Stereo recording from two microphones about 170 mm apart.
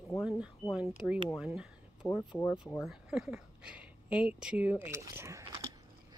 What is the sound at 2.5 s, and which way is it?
Speech, 10° left (ahead or behind).